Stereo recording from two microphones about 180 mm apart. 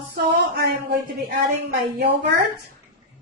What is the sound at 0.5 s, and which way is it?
Speech, 60° right (ahead or behind).